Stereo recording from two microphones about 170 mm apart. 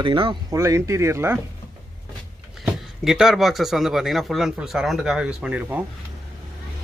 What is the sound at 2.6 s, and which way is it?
Speech, 5° right (ahead or behind).